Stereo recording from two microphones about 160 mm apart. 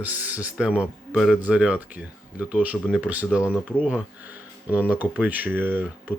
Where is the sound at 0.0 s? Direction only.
10° right (ahead or behind).